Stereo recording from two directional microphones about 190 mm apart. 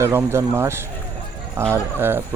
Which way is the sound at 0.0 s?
10° right (ahead or behind).